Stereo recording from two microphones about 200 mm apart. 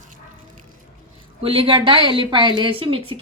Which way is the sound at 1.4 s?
30° right (ahead or behind).